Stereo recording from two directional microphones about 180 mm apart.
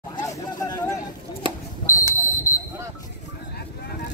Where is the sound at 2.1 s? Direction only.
15° left (ahead or behind).